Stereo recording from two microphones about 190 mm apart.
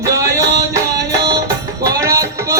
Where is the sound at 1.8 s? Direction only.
20° right (ahead or behind).